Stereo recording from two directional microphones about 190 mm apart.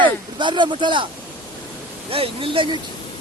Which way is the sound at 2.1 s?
30° right (ahead or behind).